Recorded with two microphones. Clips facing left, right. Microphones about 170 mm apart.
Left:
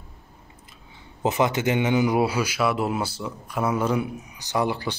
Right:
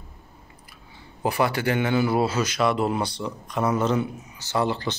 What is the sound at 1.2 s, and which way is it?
A man's voice, 20° left (ahead or behind).